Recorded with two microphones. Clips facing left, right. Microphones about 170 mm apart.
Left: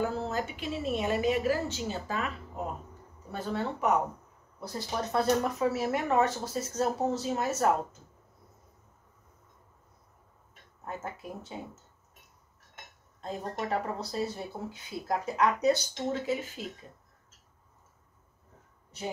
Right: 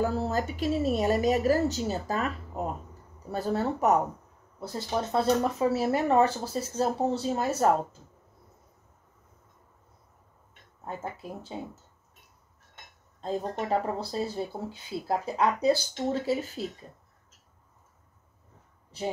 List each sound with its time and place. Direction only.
0.0 s speech: 40° right (ahead or behind)
4.6 s speech: 25° right (ahead or behind)
13.2 s speech: 30° right (ahead or behind)